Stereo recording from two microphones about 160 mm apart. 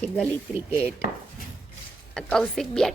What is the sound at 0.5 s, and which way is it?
Chopping, 15° right (ahead or behind).